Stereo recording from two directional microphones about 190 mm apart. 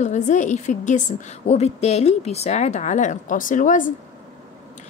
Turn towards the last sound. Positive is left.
turn(degrees=45)  # may be behind; listen again after turning